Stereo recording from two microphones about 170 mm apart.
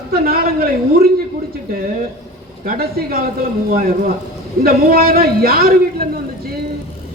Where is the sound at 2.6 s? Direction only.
60° right (ahead or behind).